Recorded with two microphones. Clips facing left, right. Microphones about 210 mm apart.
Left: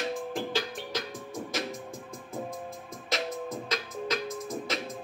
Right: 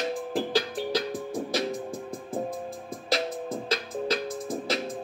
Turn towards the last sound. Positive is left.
turn(degrees=-30)  # may be behind; listen again after turning